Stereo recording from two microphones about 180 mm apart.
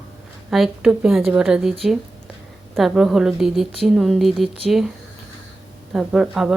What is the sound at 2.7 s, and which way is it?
Speech, centre (ahead or behind).